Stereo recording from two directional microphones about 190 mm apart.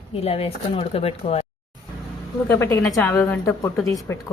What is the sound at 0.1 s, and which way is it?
Speech, 30° left (ahead or behind).